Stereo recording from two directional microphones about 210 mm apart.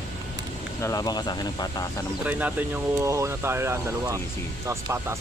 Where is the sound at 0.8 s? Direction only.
15° left (ahead or behind).